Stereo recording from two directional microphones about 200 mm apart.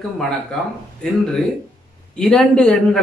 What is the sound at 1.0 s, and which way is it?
A man's voice, 5° left (ahead or behind).